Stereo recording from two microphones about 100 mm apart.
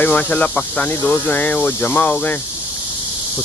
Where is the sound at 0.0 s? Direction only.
15° left (ahead or behind).